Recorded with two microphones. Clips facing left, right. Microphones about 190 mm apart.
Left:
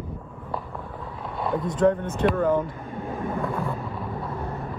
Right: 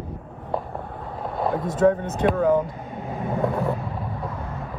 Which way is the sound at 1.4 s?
55° right (ahead or behind).